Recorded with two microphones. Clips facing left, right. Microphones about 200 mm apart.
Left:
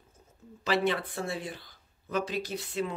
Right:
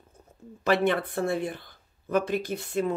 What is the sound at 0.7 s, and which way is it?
Speech, 55° right (ahead or behind).